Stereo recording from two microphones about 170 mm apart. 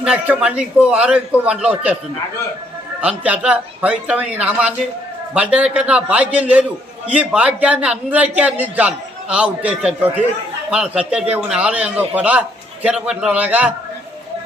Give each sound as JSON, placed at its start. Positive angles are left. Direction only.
{"t": 0.0, "sound": "a man's voice", "side_deg": -5}
{"t": 3.0, "sound": "a man's voice", "side_deg": -5}